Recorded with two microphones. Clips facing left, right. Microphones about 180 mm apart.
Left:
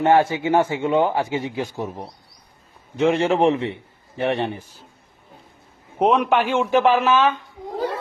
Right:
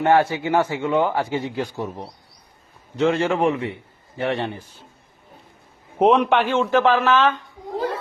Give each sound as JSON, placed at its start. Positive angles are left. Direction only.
{"t": 0.0, "sound": "a man's voice", "side_deg": 20}
{"t": 6.0, "sound": "a man's voice", "side_deg": 0}